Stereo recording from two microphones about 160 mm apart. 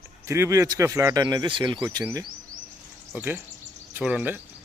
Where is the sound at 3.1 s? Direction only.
10° right (ahead or behind).